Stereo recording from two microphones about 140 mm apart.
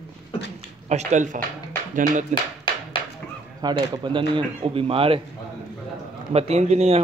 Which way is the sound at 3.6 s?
35° right (ahead or behind).